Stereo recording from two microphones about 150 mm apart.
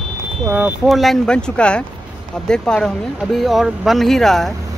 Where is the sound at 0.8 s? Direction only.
Centre (ahead or behind).